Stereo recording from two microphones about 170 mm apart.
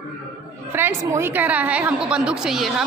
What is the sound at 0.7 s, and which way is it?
A woman's voice, 15° right (ahead or behind).